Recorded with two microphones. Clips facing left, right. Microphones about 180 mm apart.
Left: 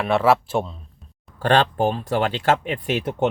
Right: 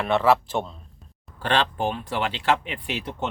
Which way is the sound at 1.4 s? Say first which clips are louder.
Left 5 dB; 45° left (ahead or behind).